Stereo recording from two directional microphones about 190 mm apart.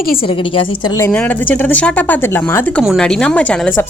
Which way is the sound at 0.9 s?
10° left (ahead or behind).